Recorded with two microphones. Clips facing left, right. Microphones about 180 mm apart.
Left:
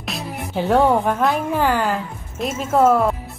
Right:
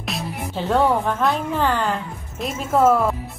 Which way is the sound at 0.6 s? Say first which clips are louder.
Left 3 dB; 10° left (ahead or behind).